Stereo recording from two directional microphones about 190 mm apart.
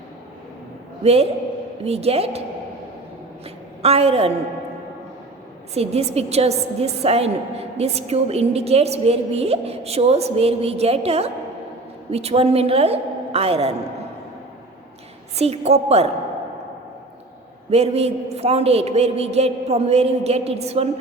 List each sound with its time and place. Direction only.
1.0 s a woman's voice: 30° right (ahead or behind)
3.4 s a woman's voice: 30° right (ahead or behind)
5.7 s a woman's voice: 30° right (ahead or behind)
15.4 s a woman's voice: 35° right (ahead or behind)
17.7 s a woman's voice: 35° right (ahead or behind)